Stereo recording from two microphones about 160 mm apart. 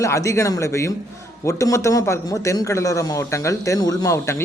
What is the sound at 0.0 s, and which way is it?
Speech, 20° left (ahead or behind).